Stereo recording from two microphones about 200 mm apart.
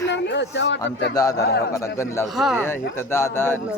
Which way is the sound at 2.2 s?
Centre (ahead or behind).